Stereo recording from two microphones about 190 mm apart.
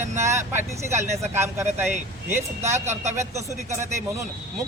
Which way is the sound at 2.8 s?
40° right (ahead or behind).